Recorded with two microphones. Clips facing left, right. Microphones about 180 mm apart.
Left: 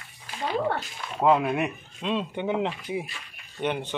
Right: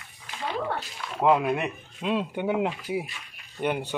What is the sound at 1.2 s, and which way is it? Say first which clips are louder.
Speech: even; 10° right (ahead or behind).